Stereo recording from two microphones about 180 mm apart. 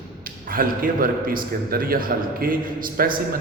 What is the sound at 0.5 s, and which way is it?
A man's voice, 55° right (ahead or behind).